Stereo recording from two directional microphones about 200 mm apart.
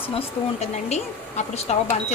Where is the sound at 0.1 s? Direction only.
30° left (ahead or behind).